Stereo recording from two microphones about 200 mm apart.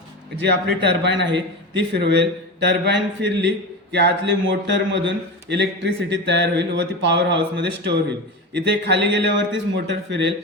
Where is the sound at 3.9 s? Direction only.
60° right (ahead or behind).